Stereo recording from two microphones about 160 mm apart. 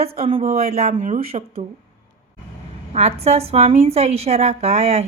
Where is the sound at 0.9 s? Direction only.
60° right (ahead or behind).